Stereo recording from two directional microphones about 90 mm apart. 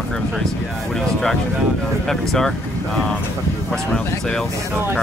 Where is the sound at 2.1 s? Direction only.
5° left (ahead or behind).